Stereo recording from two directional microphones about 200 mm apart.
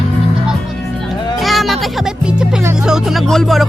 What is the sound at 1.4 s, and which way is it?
Music, centre (ahead or behind).